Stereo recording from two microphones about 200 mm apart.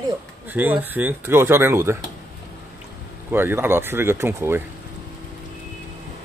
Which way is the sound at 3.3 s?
10° right (ahead or behind).